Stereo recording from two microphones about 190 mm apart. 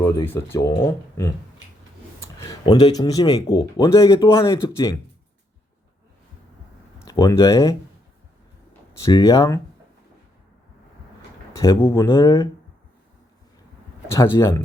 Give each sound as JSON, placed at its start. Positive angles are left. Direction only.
{"t": 0.0, "sound": "speech", "side_deg": 15}
{"t": 7.0, "sound": "speech", "side_deg": 15}
{"t": 9.0, "sound": "speech", "side_deg": 20}
{"t": 11.6, "sound": "speech", "side_deg": 15}
{"t": 14.1, "sound": "speech", "side_deg": 15}